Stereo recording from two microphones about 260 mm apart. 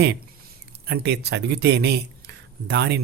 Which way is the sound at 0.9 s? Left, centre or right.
Right.